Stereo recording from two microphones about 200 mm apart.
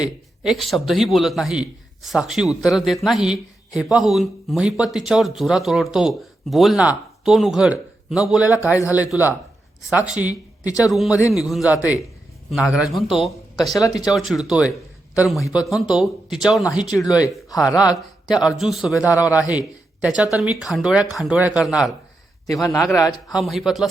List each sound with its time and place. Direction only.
0.0 s a man's voice: centre (ahead or behind)
10.7 s a man's voice: 15° left (ahead or behind)
10.9 s a man's voice: centre (ahead or behind)
13.6 s a man's voice: 15° left (ahead or behind)
14.0 s a man's voice: centre (ahead or behind)
18.3 s a man's voice: centre (ahead or behind)
22.6 s a man's voice: 15° left (ahead or behind)
23.3 s a man's voice: centre (ahead or behind)